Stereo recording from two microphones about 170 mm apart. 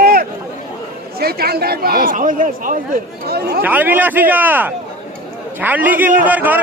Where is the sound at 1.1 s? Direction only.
65° right (ahead or behind).